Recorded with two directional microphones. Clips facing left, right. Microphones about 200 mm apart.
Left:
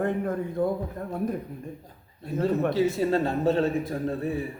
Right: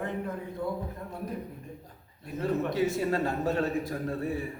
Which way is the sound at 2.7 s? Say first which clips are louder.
Left 4 dB; 25° left (ahead or behind).